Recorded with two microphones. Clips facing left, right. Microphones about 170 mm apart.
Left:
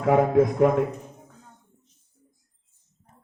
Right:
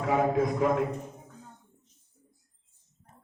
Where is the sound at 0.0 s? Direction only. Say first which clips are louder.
Left 6 dB; 60° left (ahead or behind).